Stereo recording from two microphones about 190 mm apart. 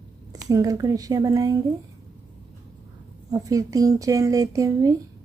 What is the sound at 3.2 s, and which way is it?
A woman's voice, 20° right (ahead or behind).